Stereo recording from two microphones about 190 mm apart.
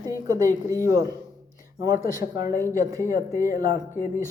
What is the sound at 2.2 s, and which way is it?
Speech, 15° right (ahead or behind).